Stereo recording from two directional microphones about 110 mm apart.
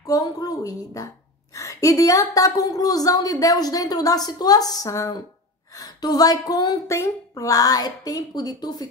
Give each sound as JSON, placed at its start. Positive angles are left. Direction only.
{"t": 0.0, "sound": "a woman's voice", "side_deg": 35}